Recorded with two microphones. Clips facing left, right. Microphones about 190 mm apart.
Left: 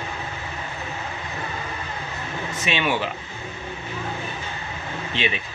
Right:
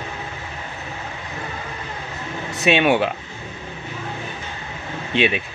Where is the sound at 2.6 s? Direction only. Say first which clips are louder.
Right 8 dB; 65° right (ahead or behind).